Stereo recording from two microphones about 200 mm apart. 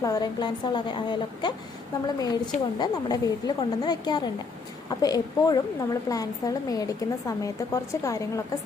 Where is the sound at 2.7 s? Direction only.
20° left (ahead or behind).